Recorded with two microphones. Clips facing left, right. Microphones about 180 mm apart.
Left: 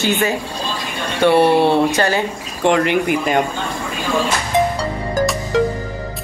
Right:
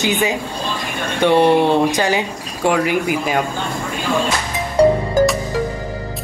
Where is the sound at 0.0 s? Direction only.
15° right (ahead or behind).